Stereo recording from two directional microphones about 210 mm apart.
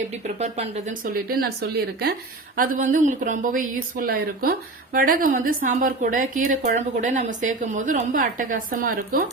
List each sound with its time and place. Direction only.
0.3 s a woman's voice: 30° right (ahead or behind)
2.6 s a woman's voice: 40° right (ahead or behind)